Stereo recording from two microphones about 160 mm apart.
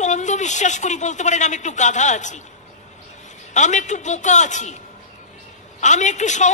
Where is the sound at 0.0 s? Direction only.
50° left (ahead or behind).